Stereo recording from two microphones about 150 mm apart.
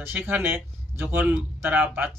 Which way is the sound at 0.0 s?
15° right (ahead or behind).